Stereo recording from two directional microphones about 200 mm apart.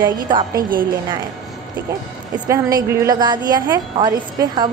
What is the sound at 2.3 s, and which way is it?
A woman's voice, 20° right (ahead or behind).